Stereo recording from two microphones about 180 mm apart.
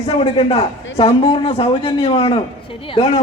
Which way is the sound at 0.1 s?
35° left (ahead or behind).